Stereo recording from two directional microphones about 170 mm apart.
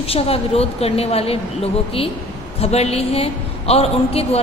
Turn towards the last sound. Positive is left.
turn(degrees=35)  # may be behind; listen again after turning